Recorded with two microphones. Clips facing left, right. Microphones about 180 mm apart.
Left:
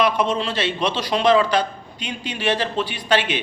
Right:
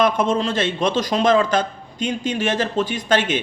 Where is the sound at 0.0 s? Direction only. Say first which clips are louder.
Right 2 dB; 45° right (ahead or behind).